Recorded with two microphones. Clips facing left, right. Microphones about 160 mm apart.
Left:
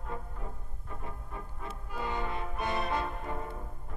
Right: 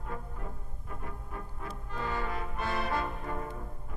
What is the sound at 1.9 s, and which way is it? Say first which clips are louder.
Brass instrument: even; 15° left (ahead or behind).